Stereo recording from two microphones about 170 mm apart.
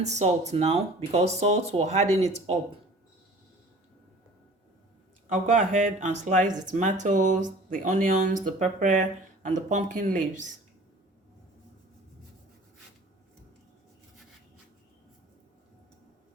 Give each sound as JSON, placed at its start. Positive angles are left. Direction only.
{"t": 0.0, "sound": "speech", "side_deg": -40}
{"t": 5.3, "sound": "speech", "side_deg": -45}